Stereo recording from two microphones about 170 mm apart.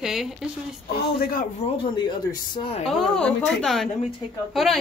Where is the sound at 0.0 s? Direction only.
Centre (ahead or behind).